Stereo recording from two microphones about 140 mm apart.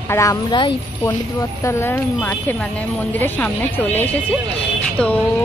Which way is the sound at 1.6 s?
15° left (ahead or behind).